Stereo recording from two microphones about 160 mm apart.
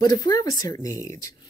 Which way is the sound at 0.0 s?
25° left (ahead or behind).